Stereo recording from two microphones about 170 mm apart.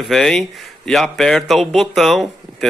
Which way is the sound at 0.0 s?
Centre (ahead or behind).